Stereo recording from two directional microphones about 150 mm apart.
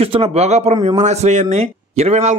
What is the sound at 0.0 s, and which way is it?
A man's voice, 40° right (ahead or behind).